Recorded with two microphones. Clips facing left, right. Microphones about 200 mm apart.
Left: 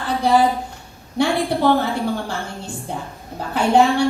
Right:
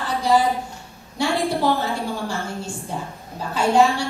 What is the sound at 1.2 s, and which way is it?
Speech, 60° left (ahead or behind).